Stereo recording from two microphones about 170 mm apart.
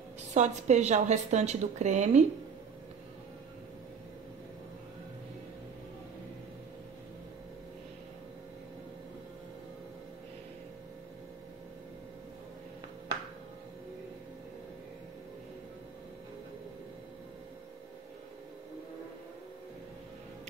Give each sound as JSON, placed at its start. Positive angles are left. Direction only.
{"t": 0.3, "sound": "a woman's voice", "side_deg": -45}